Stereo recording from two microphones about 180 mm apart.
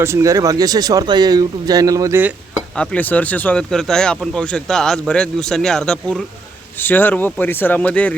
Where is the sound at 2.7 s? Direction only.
5° left (ahead or behind).